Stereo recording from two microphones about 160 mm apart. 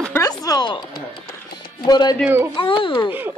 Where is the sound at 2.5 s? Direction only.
30° left (ahead or behind).